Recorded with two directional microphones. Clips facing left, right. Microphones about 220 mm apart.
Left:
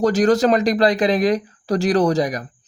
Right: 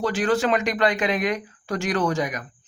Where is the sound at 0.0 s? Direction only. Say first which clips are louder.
Left 7 dB; 40° left (ahead or behind).